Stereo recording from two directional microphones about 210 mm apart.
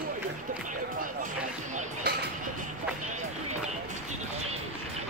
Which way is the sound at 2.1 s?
50° right (ahead or behind).